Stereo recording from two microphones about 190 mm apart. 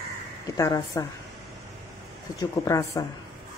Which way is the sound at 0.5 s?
15° left (ahead or behind).